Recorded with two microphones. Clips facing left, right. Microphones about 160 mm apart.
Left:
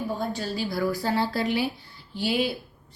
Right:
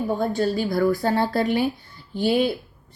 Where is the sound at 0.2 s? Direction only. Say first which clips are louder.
Right 7 dB; 50° right (ahead or behind).